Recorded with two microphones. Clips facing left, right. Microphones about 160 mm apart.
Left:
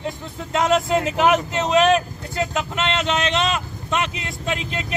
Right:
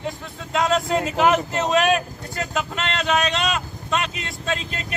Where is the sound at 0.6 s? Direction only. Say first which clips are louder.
Left 2 dB; 20° left (ahead or behind).